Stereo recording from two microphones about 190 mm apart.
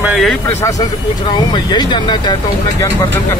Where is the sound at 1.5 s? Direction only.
25° left (ahead or behind).